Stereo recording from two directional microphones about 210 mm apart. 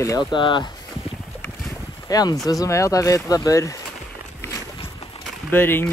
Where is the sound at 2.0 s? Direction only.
20° left (ahead or behind).